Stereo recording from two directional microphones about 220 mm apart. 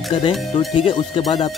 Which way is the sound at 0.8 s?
25° left (ahead or behind).